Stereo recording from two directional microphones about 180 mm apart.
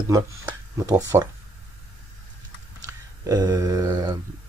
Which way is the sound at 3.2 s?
20° right (ahead or behind).